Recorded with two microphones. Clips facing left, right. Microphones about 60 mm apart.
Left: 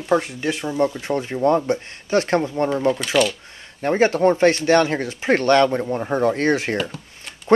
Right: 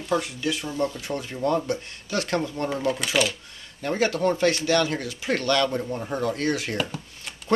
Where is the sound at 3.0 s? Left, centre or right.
Centre.